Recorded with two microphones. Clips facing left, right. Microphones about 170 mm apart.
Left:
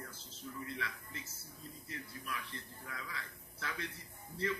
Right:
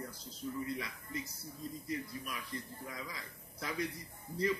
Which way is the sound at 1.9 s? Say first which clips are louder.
Right 4 dB; 15° right (ahead or behind).